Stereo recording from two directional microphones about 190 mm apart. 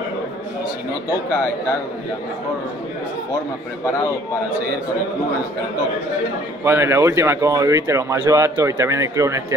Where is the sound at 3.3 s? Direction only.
20° left (ahead or behind).